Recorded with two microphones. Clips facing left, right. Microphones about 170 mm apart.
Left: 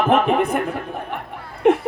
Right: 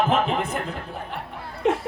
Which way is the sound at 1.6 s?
60° left (ahead or behind).